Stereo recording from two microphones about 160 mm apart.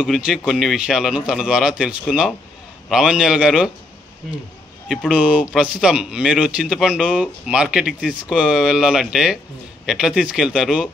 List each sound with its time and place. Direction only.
0.0 s speech: 5° right (ahead or behind)
4.8 s speech: centre (ahead or behind)